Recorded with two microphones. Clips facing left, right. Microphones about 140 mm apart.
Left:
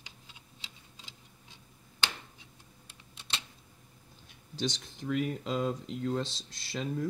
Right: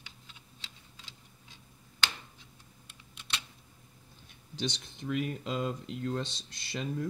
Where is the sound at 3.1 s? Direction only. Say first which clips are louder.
Even; 25° left (ahead or behind).